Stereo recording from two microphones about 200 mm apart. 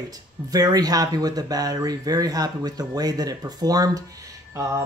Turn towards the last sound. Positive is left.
turn(degrees=-15)  # may be behind; listen again after turning